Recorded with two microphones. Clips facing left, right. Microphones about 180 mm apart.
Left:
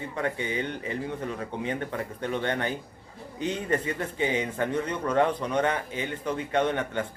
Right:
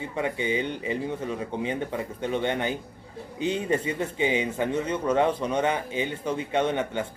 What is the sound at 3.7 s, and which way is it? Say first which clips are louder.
Speech: right 2 dB; 10° right (ahead or behind).